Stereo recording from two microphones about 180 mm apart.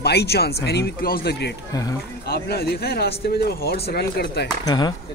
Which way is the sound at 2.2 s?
60° left (ahead or behind).